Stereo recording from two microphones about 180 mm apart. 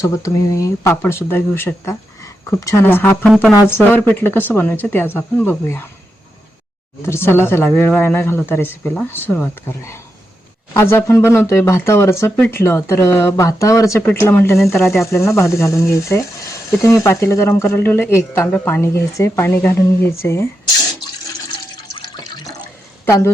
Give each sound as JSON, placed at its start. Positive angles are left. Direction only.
{"t": 0.0, "sound": "speech", "side_deg": 20}
{"t": 3.2, "sound": "speech", "side_deg": 0}
{"t": 3.7, "sound": "speech", "side_deg": 10}
{"t": 7.0, "sound": "speech", "side_deg": 15}
{"t": 23.0, "sound": "speech", "side_deg": 15}